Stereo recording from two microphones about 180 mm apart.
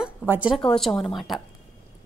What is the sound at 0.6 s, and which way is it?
Speech, 5° left (ahead or behind).